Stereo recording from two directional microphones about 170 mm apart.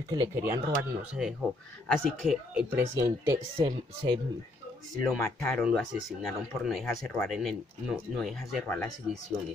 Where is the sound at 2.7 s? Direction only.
20° right (ahead or behind).